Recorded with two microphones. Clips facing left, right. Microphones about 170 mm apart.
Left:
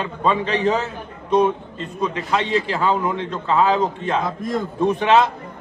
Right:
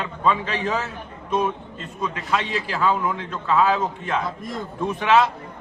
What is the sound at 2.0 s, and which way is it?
A man's voice, 25° left (ahead or behind).